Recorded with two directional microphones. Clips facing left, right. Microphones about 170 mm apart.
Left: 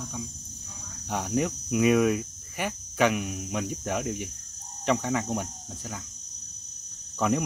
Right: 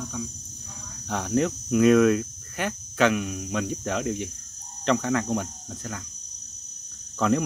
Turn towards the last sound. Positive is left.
turn(degrees=10)  # may be behind; listen again after turning